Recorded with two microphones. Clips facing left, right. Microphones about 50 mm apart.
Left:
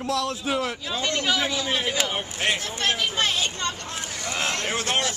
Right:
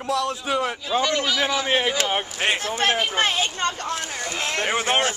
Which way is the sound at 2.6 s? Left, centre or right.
Right.